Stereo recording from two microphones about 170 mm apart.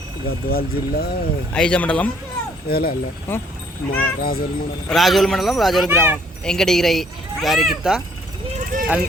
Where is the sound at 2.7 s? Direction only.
60° left (ahead or behind).